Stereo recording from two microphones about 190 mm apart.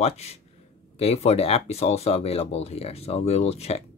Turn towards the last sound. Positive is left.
turn(degrees=35)  # may be behind; listen again after turning